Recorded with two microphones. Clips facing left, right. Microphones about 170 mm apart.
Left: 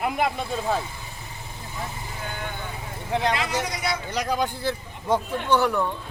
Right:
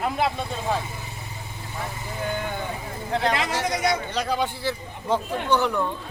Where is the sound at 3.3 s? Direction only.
45° right (ahead or behind).